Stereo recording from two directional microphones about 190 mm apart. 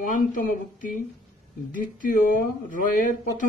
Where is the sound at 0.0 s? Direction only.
45° left (ahead or behind).